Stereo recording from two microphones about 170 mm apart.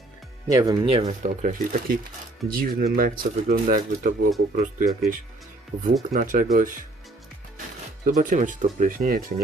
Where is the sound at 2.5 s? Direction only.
60° right (ahead or behind).